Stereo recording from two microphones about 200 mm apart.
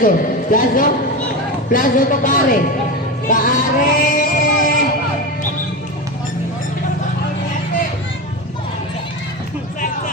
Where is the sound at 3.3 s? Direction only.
45° left (ahead or behind).